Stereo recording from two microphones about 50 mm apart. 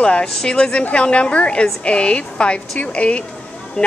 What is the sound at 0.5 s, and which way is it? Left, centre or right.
Speech, left.